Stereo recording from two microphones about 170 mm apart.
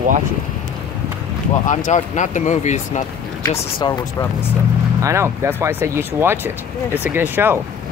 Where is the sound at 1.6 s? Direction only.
45° left (ahead or behind).